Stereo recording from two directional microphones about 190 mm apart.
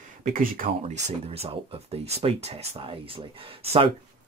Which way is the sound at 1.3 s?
30° right (ahead or behind).